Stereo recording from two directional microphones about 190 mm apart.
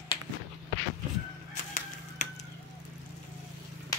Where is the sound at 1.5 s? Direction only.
40° left (ahead or behind).